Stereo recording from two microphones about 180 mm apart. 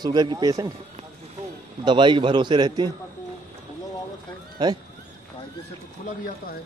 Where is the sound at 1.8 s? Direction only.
25° right (ahead or behind).